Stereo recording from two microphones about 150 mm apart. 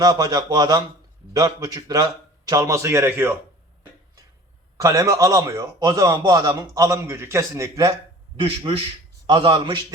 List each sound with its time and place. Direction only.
0.0 s a man's voice: 25° right (ahead or behind)
4.8 s a man's voice: 20° right (ahead or behind)
8.4 s a man's voice: 35° right (ahead or behind)